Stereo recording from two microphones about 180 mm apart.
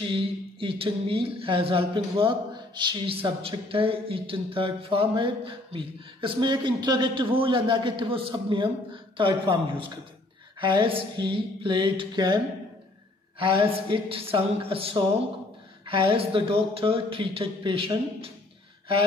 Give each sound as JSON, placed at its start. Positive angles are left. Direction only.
{"t": 0.0, "sound": "speech", "side_deg": -30}
{"t": 13.4, "sound": "speech", "side_deg": -30}